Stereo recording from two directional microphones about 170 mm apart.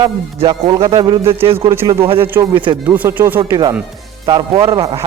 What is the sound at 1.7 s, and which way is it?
Speech, 15° right (ahead or behind).